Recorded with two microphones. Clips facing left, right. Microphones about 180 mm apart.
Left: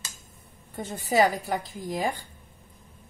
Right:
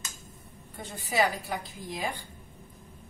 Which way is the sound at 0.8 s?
45° left (ahead or behind).